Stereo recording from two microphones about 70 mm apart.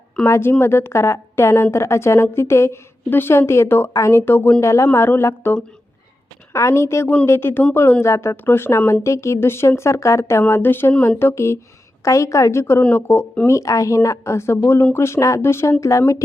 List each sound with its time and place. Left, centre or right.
0.3 s a woman's voice: left
4.6 s a woman's voice: left
6.5 s a woman's voice: left
10.4 s a woman's voice: left
13.5 s a woman's voice: left